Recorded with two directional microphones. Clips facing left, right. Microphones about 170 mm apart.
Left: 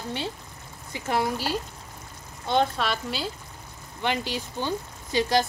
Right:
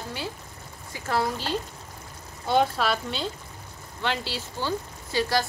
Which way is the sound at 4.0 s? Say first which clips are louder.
Left 2 dB; 15° left (ahead or behind).